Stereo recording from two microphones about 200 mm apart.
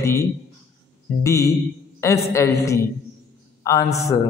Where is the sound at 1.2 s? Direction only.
15° left (ahead or behind).